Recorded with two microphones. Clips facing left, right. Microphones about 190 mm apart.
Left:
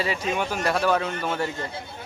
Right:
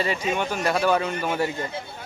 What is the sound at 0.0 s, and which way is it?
Speech, 5° left (ahead or behind).